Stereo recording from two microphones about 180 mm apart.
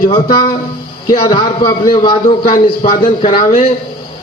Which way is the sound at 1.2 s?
25° left (ahead or behind).